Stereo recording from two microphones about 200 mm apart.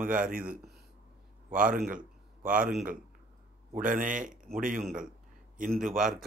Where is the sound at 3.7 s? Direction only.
40° right (ahead or behind).